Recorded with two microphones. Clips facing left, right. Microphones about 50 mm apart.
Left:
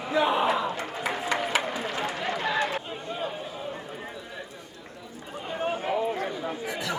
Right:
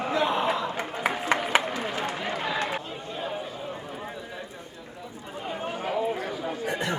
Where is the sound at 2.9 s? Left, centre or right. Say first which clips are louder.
Left 1 dB; centre.